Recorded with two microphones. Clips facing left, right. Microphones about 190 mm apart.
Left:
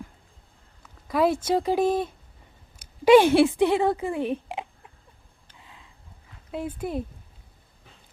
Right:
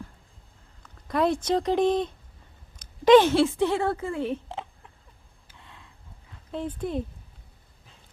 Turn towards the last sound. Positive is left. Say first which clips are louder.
# even
turn(degrees=5)  # may be behind; listen again after turning